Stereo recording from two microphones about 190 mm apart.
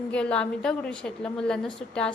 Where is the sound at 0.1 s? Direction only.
5° left (ahead or behind).